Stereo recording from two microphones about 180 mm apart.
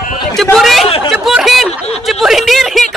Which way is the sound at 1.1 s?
5° right (ahead or behind).